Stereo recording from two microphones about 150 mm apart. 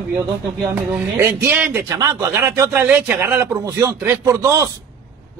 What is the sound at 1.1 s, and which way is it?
A man's voice, 15° right (ahead or behind).